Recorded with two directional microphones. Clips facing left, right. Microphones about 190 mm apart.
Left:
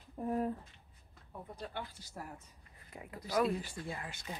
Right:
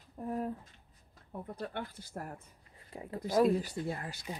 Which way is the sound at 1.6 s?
60° right (ahead or behind).